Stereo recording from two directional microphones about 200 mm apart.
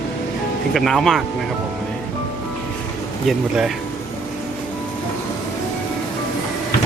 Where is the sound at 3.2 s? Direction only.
Centre (ahead or behind).